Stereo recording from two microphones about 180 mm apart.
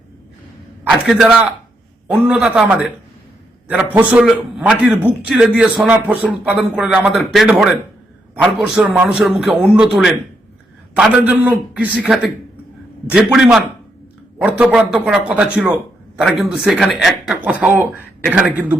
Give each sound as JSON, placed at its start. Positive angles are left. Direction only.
{"t": 0.9, "sound": "a man's voice", "side_deg": 0}
{"t": 4.2, "sound": "a man's voice", "side_deg": 0}